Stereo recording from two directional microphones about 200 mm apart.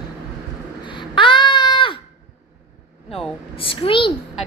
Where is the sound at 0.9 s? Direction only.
25° left (ahead or behind).